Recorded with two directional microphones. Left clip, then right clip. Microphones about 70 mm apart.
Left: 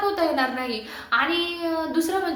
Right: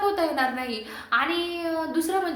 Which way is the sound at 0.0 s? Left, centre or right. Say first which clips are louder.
Left 1 dB; right.